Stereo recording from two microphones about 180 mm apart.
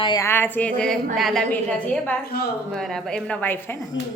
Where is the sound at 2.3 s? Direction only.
60° left (ahead or behind).